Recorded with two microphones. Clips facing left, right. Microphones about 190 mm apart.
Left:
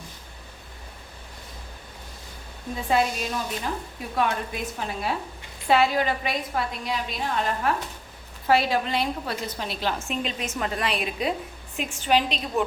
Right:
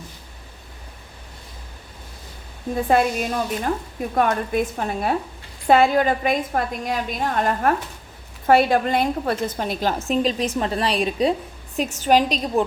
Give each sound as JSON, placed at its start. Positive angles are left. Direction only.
{"t": 2.9, "sound": "a woman's voice", "side_deg": -55}